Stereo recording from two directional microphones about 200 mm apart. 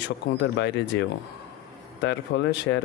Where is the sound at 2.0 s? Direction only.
65° left (ahead or behind).